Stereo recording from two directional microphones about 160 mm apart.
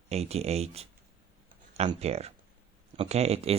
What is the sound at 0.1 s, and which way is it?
Speech, 40° right (ahead or behind).